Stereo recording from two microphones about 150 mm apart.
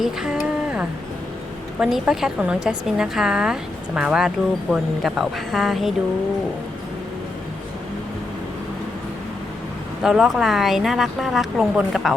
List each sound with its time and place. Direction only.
0.0 s a sound: 5° right (ahead or behind)
1.8 s a woman's voice: 5° right (ahead or behind)
10.0 s a woman's voice: 5° right (ahead or behind)